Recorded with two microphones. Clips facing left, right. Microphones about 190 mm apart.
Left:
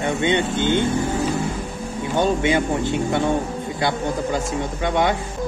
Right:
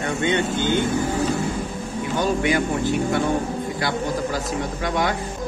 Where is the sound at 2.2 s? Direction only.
20° left (ahead or behind).